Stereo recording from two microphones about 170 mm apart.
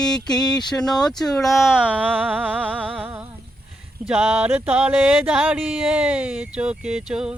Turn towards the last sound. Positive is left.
turn(degrees=-5)  # may be behind; listen again after turning